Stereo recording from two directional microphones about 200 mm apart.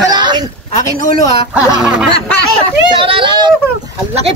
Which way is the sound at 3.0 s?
25° right (ahead or behind).